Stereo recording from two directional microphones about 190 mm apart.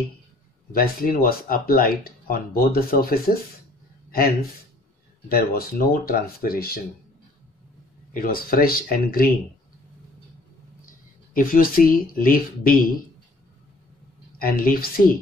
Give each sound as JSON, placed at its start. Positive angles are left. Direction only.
{"t": 0.7, "sound": "speech", "side_deg": 50}
{"t": 8.1, "sound": "speech", "side_deg": 50}
{"t": 11.3, "sound": "speech", "side_deg": 45}
{"t": 14.4, "sound": "speech", "side_deg": 50}